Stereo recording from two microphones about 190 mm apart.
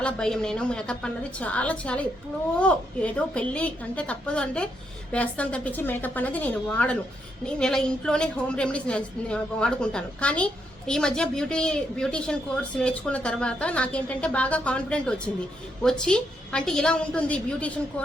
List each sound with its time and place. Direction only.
0.0 s a woman's voice: 5° left (ahead or behind)